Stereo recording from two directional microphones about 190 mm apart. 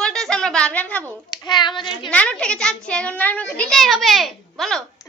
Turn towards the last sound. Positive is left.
turn(degrees=0)  # may be behind; listen again after turning